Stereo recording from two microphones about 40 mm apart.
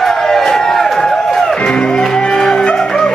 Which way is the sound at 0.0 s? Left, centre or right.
Centre.